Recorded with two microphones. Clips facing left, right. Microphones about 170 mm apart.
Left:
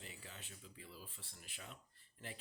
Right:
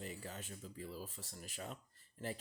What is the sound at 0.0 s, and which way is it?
Speech, 45° right (ahead or behind).